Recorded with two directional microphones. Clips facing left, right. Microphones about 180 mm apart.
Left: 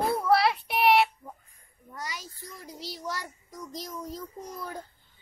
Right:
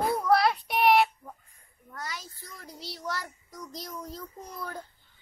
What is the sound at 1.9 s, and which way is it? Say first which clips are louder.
A child's voice: left 1 dB; 10° left (ahead or behind).